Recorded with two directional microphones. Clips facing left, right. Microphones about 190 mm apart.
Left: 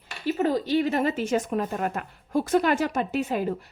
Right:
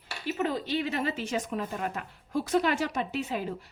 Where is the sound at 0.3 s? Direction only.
35° left (ahead or behind).